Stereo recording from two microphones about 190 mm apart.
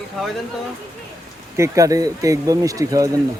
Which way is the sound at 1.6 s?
15° right (ahead or behind).